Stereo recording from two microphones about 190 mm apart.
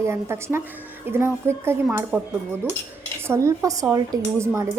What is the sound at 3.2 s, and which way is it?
A woman's voice, 15° right (ahead or behind).